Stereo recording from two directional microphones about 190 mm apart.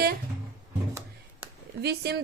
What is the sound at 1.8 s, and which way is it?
Speech, 60° right (ahead or behind).